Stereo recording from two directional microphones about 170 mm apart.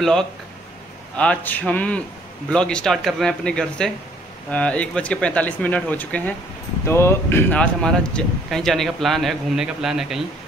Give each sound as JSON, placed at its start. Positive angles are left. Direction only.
{"t": 1.1, "sound": "speech", "side_deg": 5}